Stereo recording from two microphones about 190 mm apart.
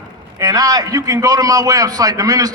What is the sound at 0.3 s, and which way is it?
A man's voice, 20° right (ahead or behind).